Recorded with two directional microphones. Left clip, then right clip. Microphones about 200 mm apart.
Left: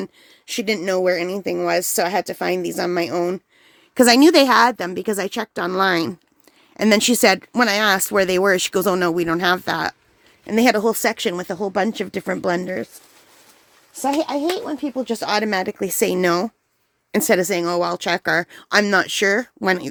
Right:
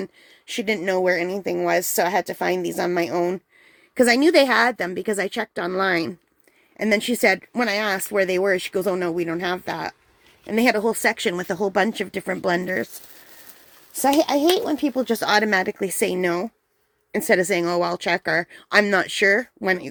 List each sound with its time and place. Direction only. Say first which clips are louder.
0.0 s speech: left 1 dB; 15° left (ahead or behind)
3.9 s a woman's voice: left 3 dB; 30° left (ahead or behind)
6.7 s a woman's voice: left 5 dB; 35° left (ahead or behind); by 11.4 s 15° left (ahead or behind)
11.4 s speech: right 1 dB; centre (ahead or behind)
11.8 s a woman's voice: even; 20° left (ahead or behind)
14.0 s a child's voice: right 2 dB; 25° right (ahead or behind)
15.0 s speech: right 1 dB; 10° right (ahead or behind)
15.3 s speech: right 2 dB; 5° left (ahead or behind); by 16.5 s 40° left (ahead or behind)
17.1 s speech: left 1 dB; 20° left (ahead or behind)